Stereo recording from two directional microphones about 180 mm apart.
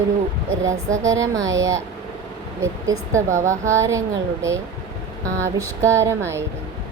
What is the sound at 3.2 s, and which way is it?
Speech, 45° right (ahead or behind).